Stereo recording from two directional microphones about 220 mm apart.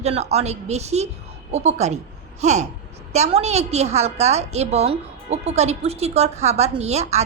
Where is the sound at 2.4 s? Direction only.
30° right (ahead or behind).